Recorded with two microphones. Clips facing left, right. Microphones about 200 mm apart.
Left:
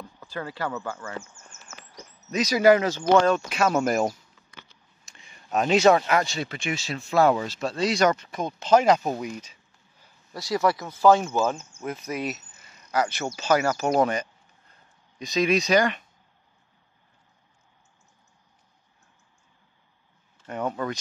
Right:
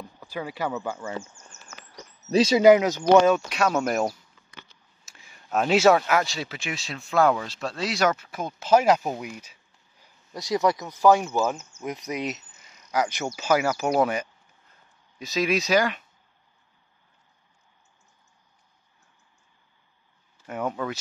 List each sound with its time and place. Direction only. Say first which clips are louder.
0.0 s speech: right 1 dB; 15° right (ahead or behind)
2.2 s speech: right 3 dB; 30° right (ahead or behind); by 4.1 s centre (ahead or behind)
5.0 s a sound: even; 5° right (ahead or behind)
5.9 s speech: even; centre (ahead or behind)
10.3 s speech: right 1 dB; 20° right (ahead or behind)
11.7 s cricket: even; 30° left (ahead or behind)
12.1 s speech: even; 20° right (ahead or behind); by 16.0 s 5° right (ahead or behind)
20.4 s speech: even; 5° right (ahead or behind)